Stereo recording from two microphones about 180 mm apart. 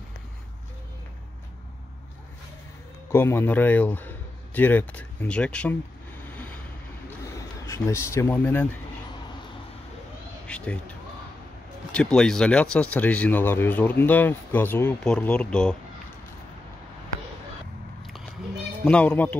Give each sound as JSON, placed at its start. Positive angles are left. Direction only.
{"t": 3.1, "sound": "a man's voice", "side_deg": 15}
{"t": 6.2, "sound": "vehicle", "side_deg": 10}
{"t": 7.3, "sound": "speech", "side_deg": 15}
{"t": 10.4, "sound": "a sound", "side_deg": 5}
{"t": 11.9, "sound": "speech", "side_deg": 5}
{"t": 18.9, "sound": "speech", "side_deg": 5}